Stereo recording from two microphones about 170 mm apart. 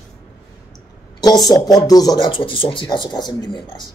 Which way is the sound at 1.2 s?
25° left (ahead or behind).